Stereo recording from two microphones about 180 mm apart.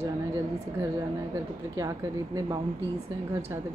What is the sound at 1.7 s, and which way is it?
Speech, 20° right (ahead or behind).